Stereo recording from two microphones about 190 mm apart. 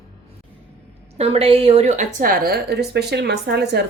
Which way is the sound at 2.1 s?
50° right (ahead or behind).